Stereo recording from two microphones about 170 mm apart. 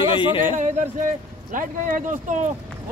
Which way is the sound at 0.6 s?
45° right (ahead or behind).